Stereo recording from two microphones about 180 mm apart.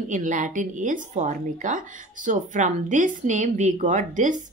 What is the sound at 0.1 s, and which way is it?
A woman's voice, 45° right (ahead or behind).